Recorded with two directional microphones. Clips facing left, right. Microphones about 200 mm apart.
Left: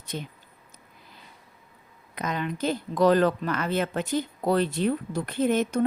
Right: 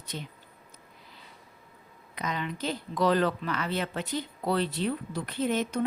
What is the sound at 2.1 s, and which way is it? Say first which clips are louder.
Speech: left 4 dB; 50° left (ahead or behind).